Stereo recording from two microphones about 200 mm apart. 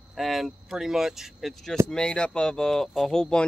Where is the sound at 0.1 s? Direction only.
Centre (ahead or behind).